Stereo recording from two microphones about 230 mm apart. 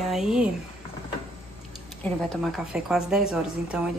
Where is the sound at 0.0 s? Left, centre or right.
Centre.